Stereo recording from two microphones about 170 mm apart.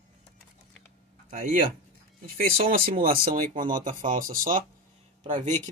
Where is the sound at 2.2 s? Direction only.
60° right (ahead or behind).